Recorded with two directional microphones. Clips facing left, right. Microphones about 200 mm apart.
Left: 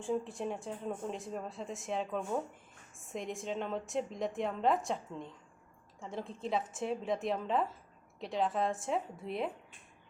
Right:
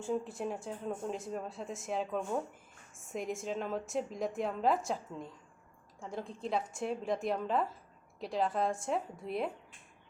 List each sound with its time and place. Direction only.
0.0 s speech: centre (ahead or behind)